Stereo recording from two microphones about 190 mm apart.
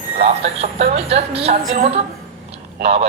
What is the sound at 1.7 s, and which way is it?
Speech, 45° right (ahead or behind).